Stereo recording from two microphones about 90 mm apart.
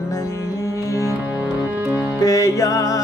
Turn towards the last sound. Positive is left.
turn(degrees=40)  # may be behind; listen again after turning